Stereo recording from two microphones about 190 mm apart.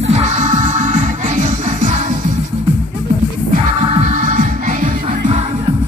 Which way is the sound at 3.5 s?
35° right (ahead or behind).